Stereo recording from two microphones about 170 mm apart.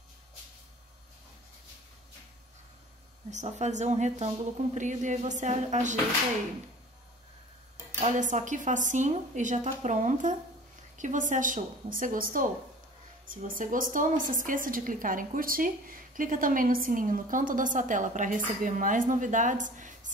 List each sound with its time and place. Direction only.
3.3 s a woman's voice: 45° right (ahead or behind)
8.0 s a woman's voice: 45° right (ahead or behind)